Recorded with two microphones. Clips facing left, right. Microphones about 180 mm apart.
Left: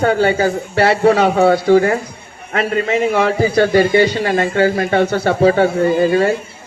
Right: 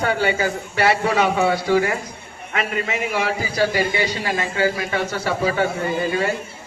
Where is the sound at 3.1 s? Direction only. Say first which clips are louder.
Left 9 dB; 55° left (ahead or behind).